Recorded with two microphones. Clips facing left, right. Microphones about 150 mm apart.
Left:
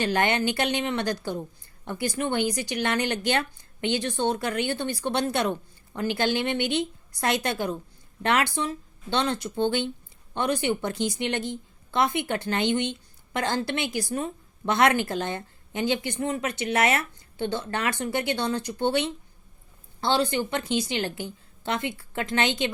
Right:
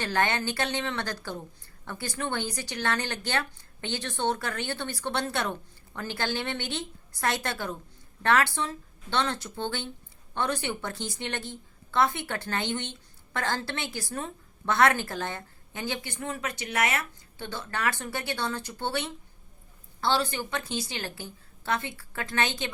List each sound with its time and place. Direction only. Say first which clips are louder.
0.0 s a woman's voice: left 4 dB; 15° left (ahead or behind)